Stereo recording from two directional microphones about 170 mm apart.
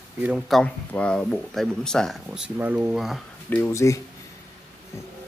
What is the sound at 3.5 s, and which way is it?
Speech, 15° left (ahead or behind).